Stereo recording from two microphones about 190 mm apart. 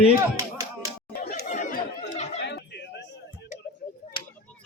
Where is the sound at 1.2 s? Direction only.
40° left (ahead or behind).